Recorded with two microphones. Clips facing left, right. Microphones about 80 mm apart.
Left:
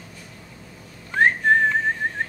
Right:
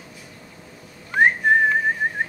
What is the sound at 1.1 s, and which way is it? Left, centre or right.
Whistling, centre.